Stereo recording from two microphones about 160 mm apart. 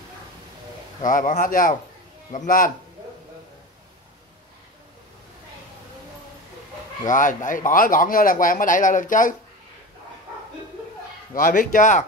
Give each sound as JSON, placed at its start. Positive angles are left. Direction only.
{"t": 1.0, "sound": "a man's voice", "side_deg": 55}
{"t": 7.1, "sound": "a man's voice", "side_deg": 55}
{"t": 11.3, "sound": "speech", "side_deg": 55}